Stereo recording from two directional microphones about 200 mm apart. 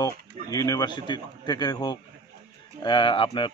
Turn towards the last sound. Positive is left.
turn(degrees=25)  # may be behind; listen again after turning